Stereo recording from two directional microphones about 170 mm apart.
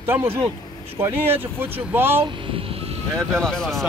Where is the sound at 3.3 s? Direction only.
Centre (ahead or behind).